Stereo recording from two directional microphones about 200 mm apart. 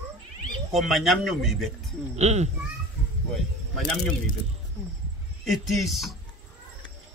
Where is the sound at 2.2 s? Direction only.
35° right (ahead or behind).